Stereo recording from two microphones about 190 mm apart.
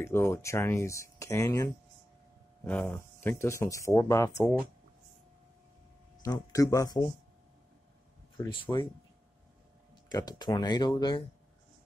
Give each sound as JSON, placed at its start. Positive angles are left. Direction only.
{"t": 0.0, "sound": "speech", "side_deg": 15}
{"t": 6.2, "sound": "speech", "side_deg": 20}
{"t": 8.5, "sound": "speech", "side_deg": 25}
{"t": 10.0, "sound": "speech", "side_deg": 20}